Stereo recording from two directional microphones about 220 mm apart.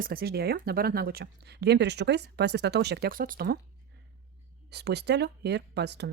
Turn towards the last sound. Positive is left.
turn(degrees=-50)  # may be behind; listen again after turning